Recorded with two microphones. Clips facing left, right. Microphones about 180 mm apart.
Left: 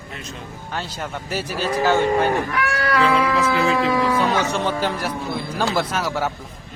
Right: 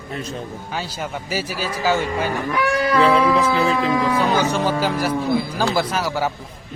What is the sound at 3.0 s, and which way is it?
Music, 30° right (ahead or behind).